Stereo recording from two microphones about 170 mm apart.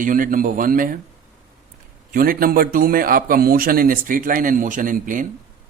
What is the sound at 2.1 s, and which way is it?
Speech, 55° right (ahead or behind).